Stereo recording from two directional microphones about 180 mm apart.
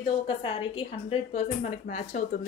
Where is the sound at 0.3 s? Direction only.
30° left (ahead or behind).